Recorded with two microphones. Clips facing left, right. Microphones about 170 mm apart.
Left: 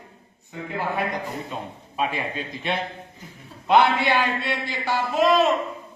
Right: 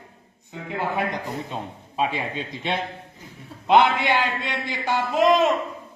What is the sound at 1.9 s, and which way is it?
Speech, 25° right (ahead or behind).